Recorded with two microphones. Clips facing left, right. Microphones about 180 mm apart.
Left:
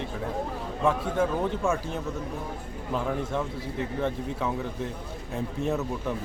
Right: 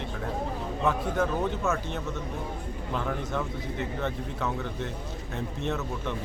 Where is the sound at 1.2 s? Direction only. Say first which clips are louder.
Left 2 dB; 10° left (ahead or behind).